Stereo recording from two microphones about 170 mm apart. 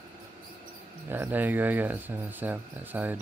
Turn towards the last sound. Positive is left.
turn(degrees=-10)  # may be behind; listen again after turning